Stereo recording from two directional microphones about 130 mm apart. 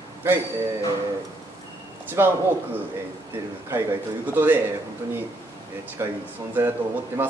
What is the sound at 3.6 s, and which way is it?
Speech, 15° right (ahead or behind).